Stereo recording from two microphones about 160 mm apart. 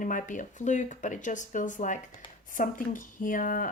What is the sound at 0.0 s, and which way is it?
A woman's voice, 55° left (ahead or behind).